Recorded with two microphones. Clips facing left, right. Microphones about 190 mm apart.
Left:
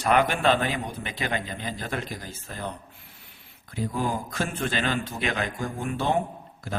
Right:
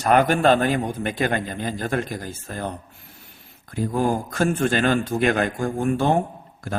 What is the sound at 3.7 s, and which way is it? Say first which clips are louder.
Speech: right 6 dB; 45° right (ahead or behind).